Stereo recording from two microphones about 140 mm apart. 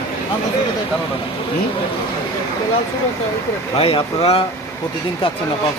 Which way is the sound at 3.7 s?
45° left (ahead or behind).